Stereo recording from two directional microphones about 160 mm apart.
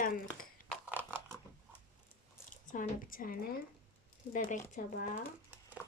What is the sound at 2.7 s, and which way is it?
Speech, 60° left (ahead or behind).